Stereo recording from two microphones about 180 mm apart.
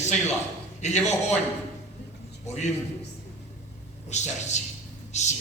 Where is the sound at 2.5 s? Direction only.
40° left (ahead or behind).